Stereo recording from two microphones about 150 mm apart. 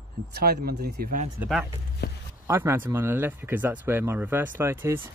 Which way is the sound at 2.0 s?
90° left.